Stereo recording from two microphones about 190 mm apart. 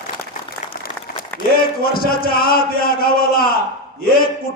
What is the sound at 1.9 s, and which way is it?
A man's voice, 50° left (ahead or behind).